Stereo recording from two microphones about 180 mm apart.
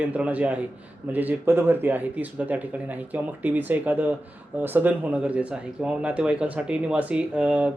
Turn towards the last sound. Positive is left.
turn(degrees=-5)  # may be behind; listen again after turning